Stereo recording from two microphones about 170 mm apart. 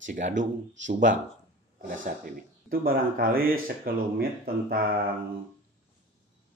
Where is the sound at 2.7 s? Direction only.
60° right (ahead or behind).